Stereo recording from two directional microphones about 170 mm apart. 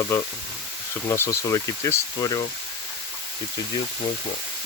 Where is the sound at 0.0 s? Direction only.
20° left (ahead or behind).